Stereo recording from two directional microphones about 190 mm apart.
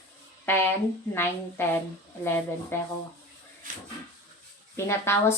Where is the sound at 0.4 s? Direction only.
10° left (ahead or behind).